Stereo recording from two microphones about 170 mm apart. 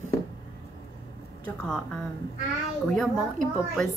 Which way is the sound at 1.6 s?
5° left (ahead or behind).